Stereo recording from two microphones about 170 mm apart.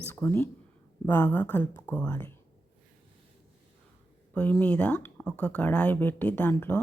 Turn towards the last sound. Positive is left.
turn(degrees=10)  # may be behind; listen again after turning